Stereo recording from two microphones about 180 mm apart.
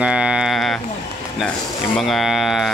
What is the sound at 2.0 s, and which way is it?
Speech, centre (ahead or behind).